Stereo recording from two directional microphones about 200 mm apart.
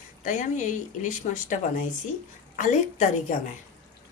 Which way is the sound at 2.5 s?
40° left (ahead or behind).